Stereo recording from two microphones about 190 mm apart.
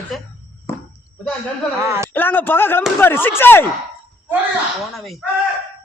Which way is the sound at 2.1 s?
10° left (ahead or behind).